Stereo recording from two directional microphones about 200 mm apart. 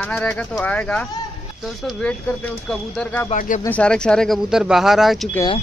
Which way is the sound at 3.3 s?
40° left (ahead or behind).